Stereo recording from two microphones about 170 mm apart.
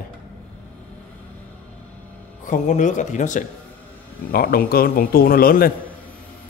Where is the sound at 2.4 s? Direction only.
45° left (ahead or behind).